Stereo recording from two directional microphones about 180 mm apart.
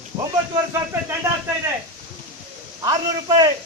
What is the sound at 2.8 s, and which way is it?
Speech, 20° right (ahead or behind).